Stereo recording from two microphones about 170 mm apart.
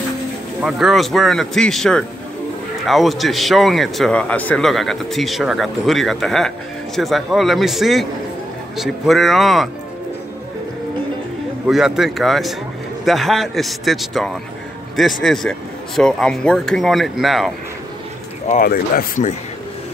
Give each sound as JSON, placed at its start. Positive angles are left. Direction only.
{"t": 0.6, "sound": "a man's voice", "side_deg": 0}
{"t": 11.6, "sound": "a man's voice", "side_deg": -5}
{"t": 18.6, "sound": "speech", "side_deg": 60}